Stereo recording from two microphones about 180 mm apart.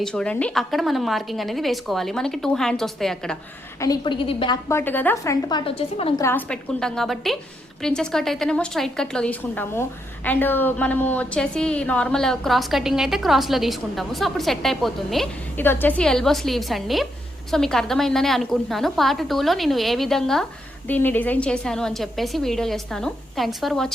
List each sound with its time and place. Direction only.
0.0 s a woman's voice: 5° left (ahead or behind)
3.8 s a woman's voice: 25° left (ahead or behind)
4.7 s a woman's voice: 10° left (ahead or behind); by 6.2 s 30° left (ahead or behind)
6.2 s a woman's voice: 10° left (ahead or behind)